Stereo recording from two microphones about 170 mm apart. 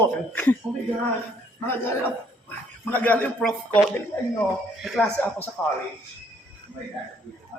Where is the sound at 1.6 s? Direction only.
10° left (ahead or behind).